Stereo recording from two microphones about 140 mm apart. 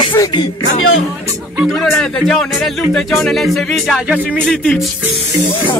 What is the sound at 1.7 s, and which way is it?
Speech, 5° left (ahead or behind).